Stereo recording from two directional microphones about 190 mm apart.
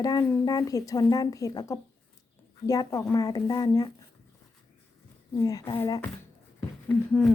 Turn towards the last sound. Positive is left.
turn(degrees=5)  # may be behind; listen again after turning